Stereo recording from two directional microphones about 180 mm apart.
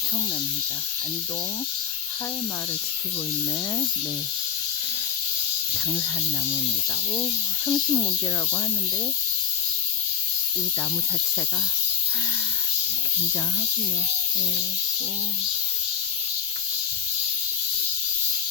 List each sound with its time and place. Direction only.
5.9 s speech: 15° left (ahead or behind)